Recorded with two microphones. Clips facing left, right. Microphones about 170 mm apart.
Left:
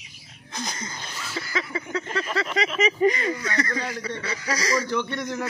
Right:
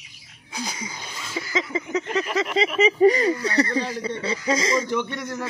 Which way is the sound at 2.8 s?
30° right (ahead or behind).